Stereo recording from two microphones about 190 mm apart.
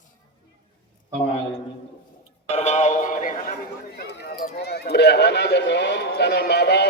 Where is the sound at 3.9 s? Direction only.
60° left (ahead or behind).